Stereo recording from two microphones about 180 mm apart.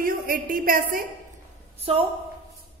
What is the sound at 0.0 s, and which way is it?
A woman's voice, 50° right (ahead or behind).